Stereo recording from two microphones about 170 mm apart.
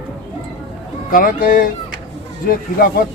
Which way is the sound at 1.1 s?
55° left (ahead or behind).